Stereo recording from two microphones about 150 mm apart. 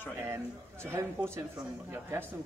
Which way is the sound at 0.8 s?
15° right (ahead or behind).